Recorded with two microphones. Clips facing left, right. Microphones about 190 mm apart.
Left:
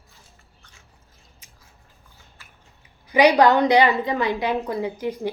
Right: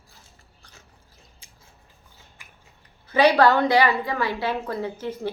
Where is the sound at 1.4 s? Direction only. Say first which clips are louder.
Even; 30° right (ahead or behind).